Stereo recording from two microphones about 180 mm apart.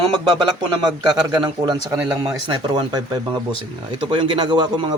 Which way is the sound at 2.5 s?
25° right (ahead or behind).